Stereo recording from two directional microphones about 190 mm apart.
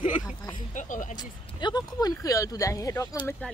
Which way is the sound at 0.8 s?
40° left (ahead or behind).